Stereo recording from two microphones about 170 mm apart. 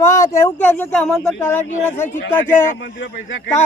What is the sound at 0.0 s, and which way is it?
Speech, 15° left (ahead or behind).